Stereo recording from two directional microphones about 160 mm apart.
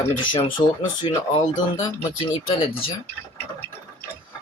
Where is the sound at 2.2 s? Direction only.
35° left (ahead or behind).